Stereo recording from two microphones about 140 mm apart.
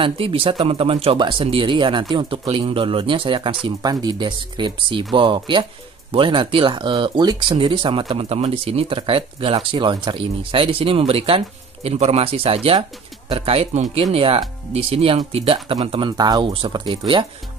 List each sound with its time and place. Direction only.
0.0 s speech: 40° right (ahead or behind)